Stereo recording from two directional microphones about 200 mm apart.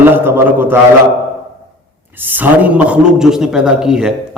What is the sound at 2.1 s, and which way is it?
A man's voice, 10° right (ahead or behind).